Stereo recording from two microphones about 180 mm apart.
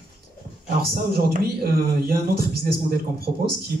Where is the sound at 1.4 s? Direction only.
55° right (ahead or behind).